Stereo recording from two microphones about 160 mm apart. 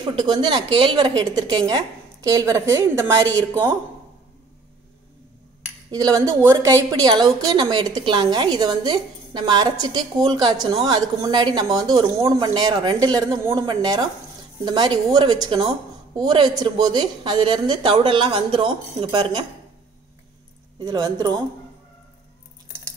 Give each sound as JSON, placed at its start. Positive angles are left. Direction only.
{"t": 0.0, "sound": "a woman's voice", "side_deg": -25}
{"t": 5.9, "sound": "a woman's voice", "side_deg": -20}
{"t": 20.8, "sound": "a woman's voice", "side_deg": -25}